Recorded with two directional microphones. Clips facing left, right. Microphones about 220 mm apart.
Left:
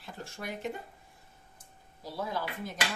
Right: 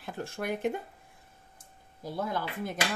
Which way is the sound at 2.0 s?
50° right (ahead or behind).